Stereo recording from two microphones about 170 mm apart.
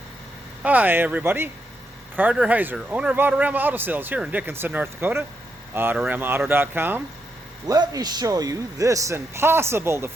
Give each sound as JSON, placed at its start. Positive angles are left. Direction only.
{"t": 0.6, "sound": "a man's voice", "side_deg": -10}